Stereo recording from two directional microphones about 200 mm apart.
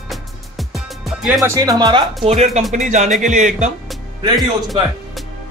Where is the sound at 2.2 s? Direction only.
35° right (ahead or behind).